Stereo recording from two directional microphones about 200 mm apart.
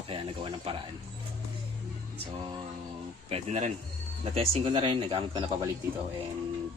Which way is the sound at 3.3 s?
35° right (ahead or behind).